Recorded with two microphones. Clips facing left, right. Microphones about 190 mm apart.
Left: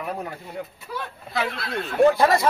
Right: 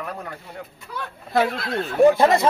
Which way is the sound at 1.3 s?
45° right (ahead or behind).